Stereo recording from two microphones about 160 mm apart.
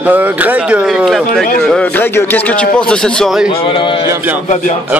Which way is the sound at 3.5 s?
35° left (ahead or behind).